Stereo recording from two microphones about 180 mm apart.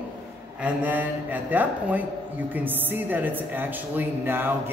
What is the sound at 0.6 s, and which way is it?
Speech, 10° right (ahead or behind).